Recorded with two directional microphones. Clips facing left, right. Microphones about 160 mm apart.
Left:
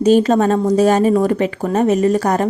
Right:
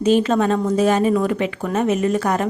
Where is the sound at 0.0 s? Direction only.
40° left (ahead or behind).